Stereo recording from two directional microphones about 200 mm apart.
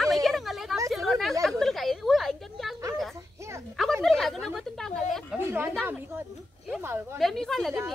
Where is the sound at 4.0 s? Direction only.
Centre (ahead or behind).